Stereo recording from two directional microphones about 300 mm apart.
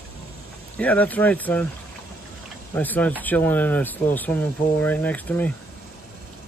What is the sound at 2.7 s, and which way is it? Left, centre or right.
Speech, centre.